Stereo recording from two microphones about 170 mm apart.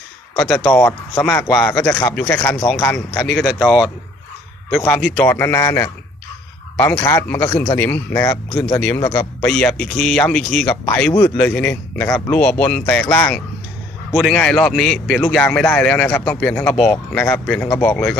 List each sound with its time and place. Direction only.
0.3 s a man's voice: 10° left (ahead or behind)